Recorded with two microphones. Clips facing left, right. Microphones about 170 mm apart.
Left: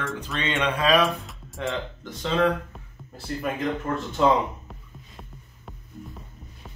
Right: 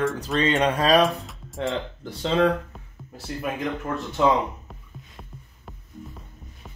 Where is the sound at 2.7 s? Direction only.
5° right (ahead or behind).